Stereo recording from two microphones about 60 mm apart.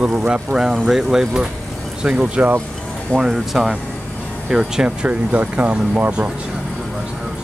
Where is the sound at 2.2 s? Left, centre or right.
Right.